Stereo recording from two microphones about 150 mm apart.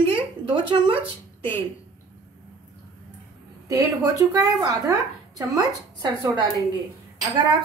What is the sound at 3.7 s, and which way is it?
A woman's voice, 20° right (ahead or behind).